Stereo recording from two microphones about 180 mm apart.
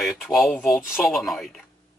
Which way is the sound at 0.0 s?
Centre (ahead or behind).